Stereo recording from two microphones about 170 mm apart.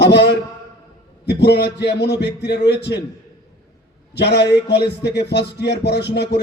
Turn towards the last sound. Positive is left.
turn(degrees=80)